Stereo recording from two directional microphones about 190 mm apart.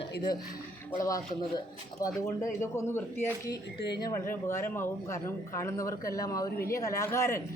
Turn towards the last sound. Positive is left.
turn(degrees=15)  # may be behind; listen again after turning